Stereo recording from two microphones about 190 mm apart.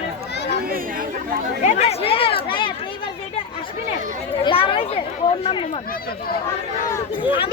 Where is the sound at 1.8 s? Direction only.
30° left (ahead or behind).